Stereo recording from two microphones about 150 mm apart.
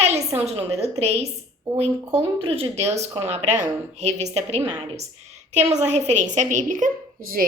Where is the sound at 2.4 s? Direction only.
40° right (ahead or behind).